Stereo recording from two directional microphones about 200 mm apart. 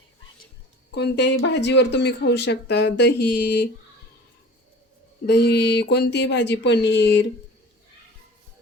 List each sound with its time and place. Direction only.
0.9 s speech: 55° left (ahead or behind)
5.2 s speech: 55° left (ahead or behind)